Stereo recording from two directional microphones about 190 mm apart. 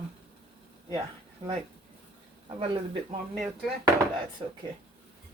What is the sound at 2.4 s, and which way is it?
Speech, 30° right (ahead or behind).